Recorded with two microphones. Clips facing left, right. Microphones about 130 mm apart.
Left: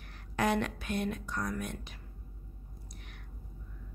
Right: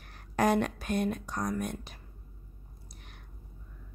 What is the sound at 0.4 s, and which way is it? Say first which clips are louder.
A woman's voice: right 4 dB; 40° right (ahead or behind).